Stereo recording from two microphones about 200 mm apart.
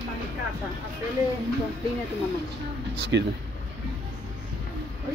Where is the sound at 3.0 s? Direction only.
60° right (ahead or behind).